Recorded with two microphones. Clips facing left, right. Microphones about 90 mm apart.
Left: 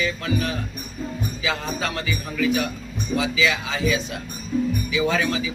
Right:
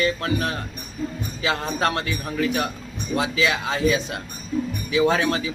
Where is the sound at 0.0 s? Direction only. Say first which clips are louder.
Right 2 dB; 60° right (ahead or behind).